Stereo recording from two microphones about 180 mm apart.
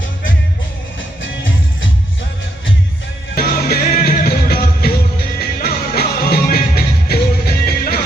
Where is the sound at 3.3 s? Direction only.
55° left (ahead or behind).